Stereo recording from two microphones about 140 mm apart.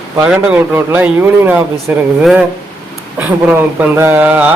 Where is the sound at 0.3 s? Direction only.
10° right (ahead or behind).